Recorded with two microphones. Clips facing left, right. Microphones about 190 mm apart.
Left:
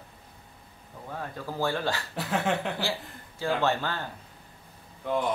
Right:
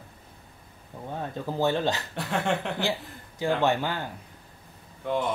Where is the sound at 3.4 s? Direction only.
15° right (ahead or behind).